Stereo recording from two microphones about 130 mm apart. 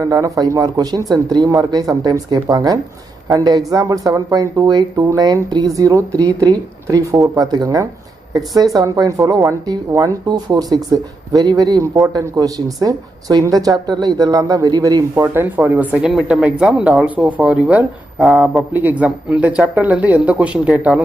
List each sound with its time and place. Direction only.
0.0 s speech: 25° right (ahead or behind)
15.3 s speech: 15° right (ahead or behind)